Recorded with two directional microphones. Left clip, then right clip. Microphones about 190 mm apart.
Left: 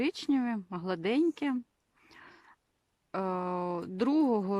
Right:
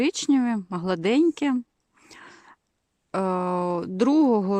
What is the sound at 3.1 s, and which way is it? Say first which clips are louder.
Speech: right 8 dB; 45° right (ahead or behind).